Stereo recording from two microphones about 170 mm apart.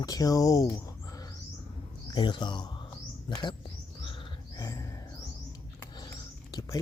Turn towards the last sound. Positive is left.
turn(degrees=20)  # may be behind; listen again after turning